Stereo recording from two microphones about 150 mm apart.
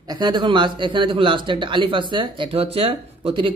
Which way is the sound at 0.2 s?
30° right (ahead or behind).